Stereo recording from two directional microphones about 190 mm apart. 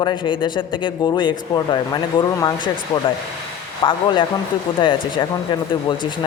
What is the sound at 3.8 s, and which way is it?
A man's voice, 25° left (ahead or behind).